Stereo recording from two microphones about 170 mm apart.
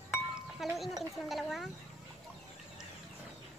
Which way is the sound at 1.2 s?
Centre (ahead or behind).